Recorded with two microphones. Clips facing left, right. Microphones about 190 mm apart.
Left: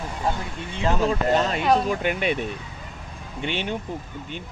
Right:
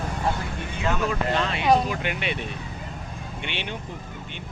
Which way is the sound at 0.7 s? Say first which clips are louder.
Left 4 dB; 30° left (ahead or behind).